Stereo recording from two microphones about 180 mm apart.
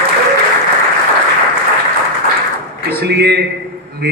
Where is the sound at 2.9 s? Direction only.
65° right (ahead or behind).